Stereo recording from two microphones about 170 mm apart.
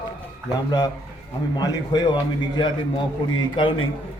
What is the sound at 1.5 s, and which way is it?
A man's voice, 20° left (ahead or behind).